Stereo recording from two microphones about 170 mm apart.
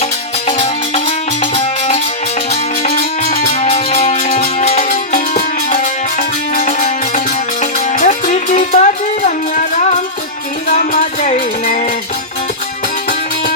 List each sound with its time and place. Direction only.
0.0 s music: 35° left (ahead or behind)
10.9 s music: 45° left (ahead or behind)